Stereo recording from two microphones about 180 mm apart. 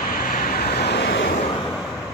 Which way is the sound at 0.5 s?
60° left (ahead or behind).